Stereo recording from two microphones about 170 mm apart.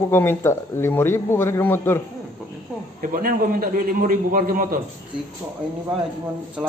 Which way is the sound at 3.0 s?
55° right (ahead or behind).